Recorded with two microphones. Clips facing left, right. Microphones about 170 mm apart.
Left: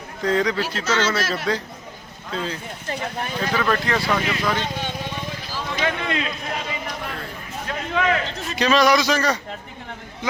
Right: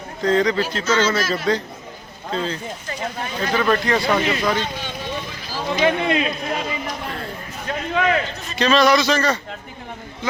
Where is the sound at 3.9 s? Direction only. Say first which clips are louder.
Right 3 dB; 20° right (ahead or behind).